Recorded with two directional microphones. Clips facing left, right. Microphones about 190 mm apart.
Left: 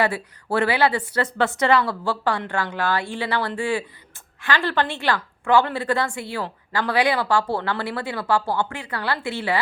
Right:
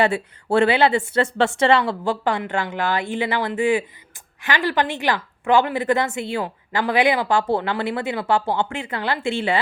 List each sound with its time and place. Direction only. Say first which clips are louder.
0.0 s a woman's voice: right 3 dB; 25° right (ahead or behind)